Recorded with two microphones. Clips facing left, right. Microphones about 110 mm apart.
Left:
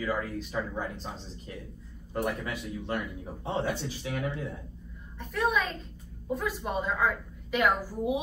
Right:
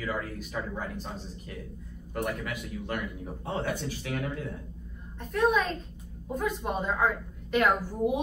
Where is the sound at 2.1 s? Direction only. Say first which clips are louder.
Left 1 dB; 30° left (ahead or behind).